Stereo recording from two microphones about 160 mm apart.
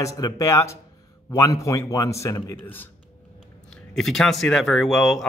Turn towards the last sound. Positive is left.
turn(degrees=0)  # may be behind; listen again after turning